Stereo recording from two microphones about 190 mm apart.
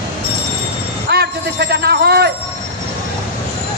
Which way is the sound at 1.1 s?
60° right (ahead or behind).